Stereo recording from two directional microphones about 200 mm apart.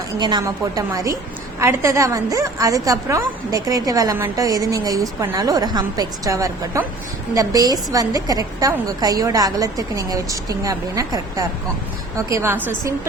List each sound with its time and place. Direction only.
0.2 s a woman's voice: 20° right (ahead or behind)